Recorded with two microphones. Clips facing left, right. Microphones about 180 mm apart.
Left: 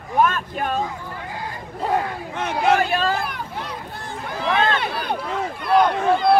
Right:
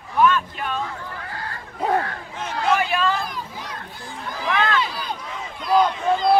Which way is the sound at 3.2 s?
65° left (ahead or behind).